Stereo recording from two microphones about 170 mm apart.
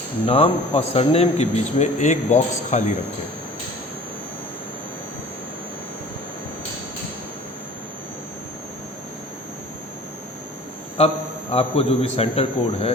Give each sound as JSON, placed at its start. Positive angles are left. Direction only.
{"t": 0.3, "sound": "a man's voice", "side_deg": 35}
{"t": 11.5, "sound": "a man's voice", "side_deg": 35}